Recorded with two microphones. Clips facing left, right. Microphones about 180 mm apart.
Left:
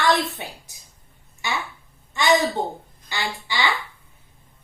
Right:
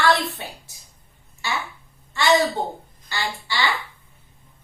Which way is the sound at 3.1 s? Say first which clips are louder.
Even; 15° left (ahead or behind).